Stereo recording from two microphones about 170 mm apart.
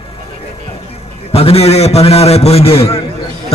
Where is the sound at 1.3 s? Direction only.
35° left (ahead or behind).